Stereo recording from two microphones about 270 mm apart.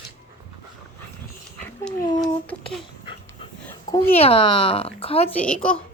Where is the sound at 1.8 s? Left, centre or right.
Centre.